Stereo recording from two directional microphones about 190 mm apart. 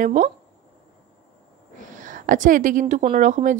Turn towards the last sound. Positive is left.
turn(degrees=-40)  # may be behind; listen again after turning